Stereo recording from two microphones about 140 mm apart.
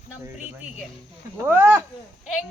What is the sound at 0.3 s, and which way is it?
A woman's voice, 10° right (ahead or behind).